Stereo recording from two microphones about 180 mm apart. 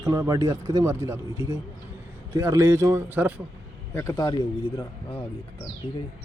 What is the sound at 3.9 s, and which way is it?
Speech, 15° left (ahead or behind).